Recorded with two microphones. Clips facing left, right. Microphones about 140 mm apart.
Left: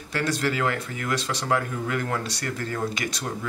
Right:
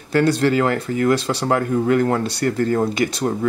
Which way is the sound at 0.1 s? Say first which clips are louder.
Right 10 dB; 30° right (ahead or behind).